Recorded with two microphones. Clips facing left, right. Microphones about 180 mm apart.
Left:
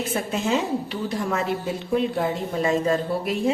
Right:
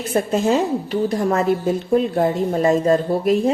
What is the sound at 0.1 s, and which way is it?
A woman's voice, 40° right (ahead or behind).